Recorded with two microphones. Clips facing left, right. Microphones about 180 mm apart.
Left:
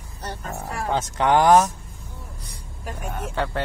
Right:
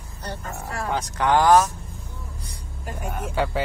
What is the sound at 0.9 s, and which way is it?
Speech, 20° left (ahead or behind).